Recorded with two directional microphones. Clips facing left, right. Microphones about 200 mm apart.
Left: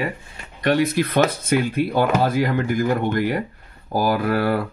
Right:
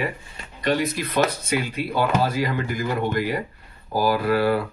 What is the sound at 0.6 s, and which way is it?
Speech, 60° left (ahead or behind).